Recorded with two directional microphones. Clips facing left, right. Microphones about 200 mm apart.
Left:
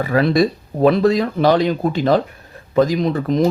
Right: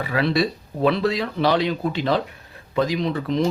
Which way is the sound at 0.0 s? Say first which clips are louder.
Left 6 dB; 45° left (ahead or behind).